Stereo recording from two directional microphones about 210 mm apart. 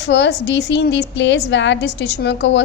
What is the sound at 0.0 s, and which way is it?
A woman's voice, 55° left (ahead or behind).